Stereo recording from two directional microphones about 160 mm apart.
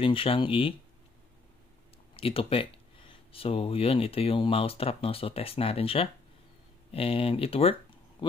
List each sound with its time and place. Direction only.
0.0 s speech: 35° left (ahead or behind)
2.1 s speech: 35° left (ahead or behind)